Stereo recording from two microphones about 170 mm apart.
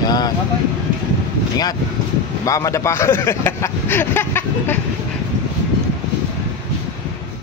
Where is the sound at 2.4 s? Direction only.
20° left (ahead or behind).